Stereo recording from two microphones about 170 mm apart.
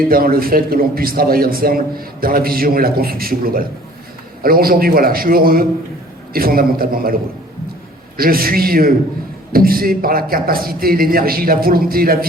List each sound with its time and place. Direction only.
0.1 s a man's voice: 60° right (ahead or behind)